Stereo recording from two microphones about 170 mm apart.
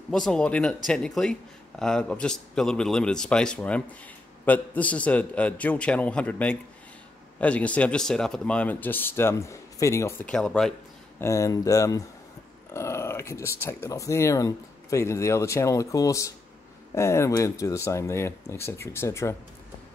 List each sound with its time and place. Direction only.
0.1 s speech: 5° left (ahead or behind)
10.3 s speech: 5° left (ahead or behind)
11.1 s speech: 20° left (ahead or behind)